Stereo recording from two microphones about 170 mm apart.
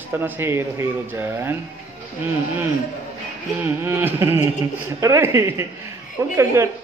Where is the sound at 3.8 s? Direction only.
15° right (ahead or behind).